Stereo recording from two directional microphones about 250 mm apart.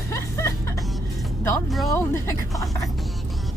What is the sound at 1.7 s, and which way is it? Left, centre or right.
Speech, centre.